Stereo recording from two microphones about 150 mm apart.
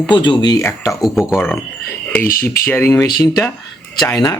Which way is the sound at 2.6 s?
15° left (ahead or behind).